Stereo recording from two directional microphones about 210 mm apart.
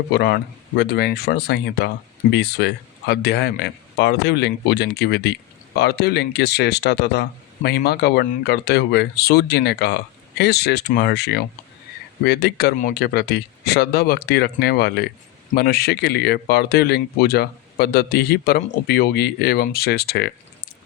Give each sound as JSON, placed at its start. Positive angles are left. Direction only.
{"t": 0.1, "sound": "speech", "side_deg": 50}